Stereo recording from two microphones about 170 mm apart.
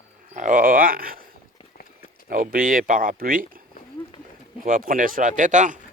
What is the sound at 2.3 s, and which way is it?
Speech, 55° right (ahead or behind).